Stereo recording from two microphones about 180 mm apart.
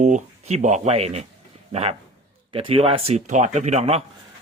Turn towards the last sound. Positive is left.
turn(degrees=-35)  # may be behind; listen again after turning